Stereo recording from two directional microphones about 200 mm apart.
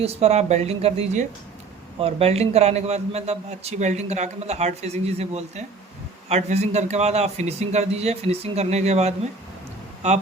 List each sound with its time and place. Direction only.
0.0 s a man's voice: 30° right (ahead or behind)